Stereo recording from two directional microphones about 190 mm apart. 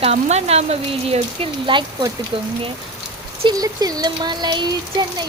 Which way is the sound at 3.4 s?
20° right (ahead or behind).